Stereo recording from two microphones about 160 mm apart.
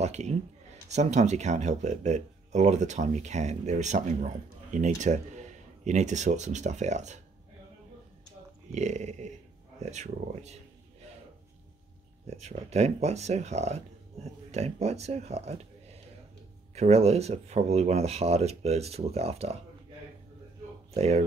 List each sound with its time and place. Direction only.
0.0 s speech: 45° right (ahead or behind)
8.7 s speech: 45° right (ahead or behind)
12.3 s speech: 40° right (ahead or behind)
20.9 s speech: 40° right (ahead or behind)